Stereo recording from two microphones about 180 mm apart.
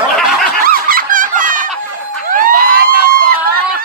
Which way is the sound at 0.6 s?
50° right (ahead or behind).